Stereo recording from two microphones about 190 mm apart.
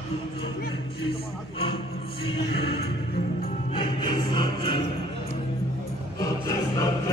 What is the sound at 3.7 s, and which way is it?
Music, 25° left (ahead or behind).